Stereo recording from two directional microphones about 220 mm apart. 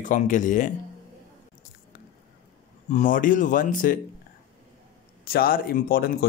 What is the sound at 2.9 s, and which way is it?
Speech, 35° left (ahead or behind).